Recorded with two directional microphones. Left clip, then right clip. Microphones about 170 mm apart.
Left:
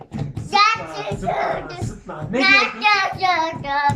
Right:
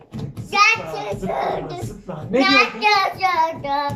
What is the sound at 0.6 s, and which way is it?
Child singing, 15° right (ahead or behind).